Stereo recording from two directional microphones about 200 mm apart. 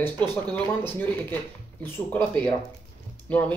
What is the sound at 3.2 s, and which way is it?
Speech, 5° left (ahead or behind).